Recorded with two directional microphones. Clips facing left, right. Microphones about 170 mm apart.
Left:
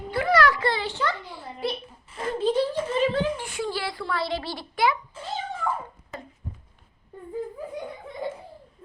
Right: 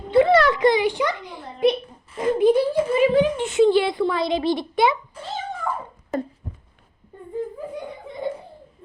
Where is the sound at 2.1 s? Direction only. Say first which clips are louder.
Right 7 dB; 15° right (ahead or behind).